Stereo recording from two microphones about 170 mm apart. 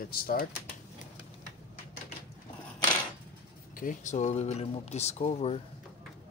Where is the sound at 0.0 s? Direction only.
60° left (ahead or behind).